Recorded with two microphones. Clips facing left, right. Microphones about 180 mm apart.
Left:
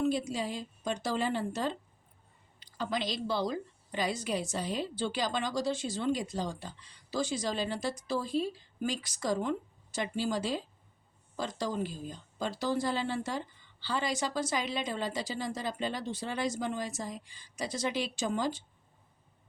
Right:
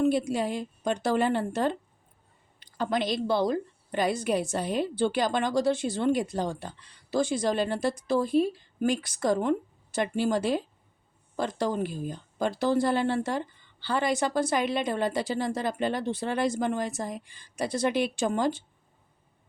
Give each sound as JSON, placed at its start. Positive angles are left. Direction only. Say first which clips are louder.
{"t": 0.0, "sound": "a woman's voice", "louder": "right 6 dB", "side_deg": -60}